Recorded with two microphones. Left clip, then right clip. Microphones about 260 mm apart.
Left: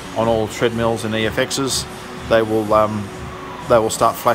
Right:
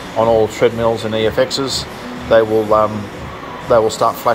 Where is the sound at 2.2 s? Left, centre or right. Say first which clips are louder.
Right 4 dB; left.